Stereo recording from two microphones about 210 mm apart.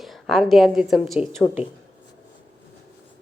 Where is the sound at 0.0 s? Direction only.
Centre (ahead or behind).